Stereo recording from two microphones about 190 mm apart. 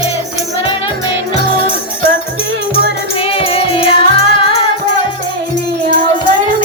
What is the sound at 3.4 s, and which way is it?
Music, 30° left (ahead or behind).